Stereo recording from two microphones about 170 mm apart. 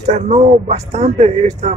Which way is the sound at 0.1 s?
40° right (ahead or behind).